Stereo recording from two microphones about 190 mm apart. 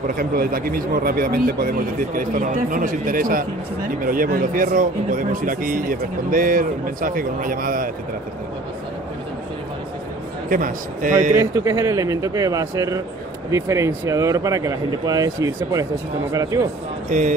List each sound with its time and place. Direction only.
0.2 s speech: 50° right (ahead or behind)
10.5 s speech: 45° right (ahead or behind)
11.3 s speech: 15° right (ahead or behind)